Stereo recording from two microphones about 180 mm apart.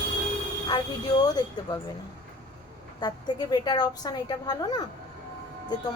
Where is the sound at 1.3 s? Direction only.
20° left (ahead or behind).